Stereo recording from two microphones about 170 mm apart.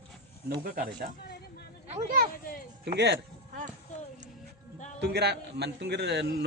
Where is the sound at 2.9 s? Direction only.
80° right.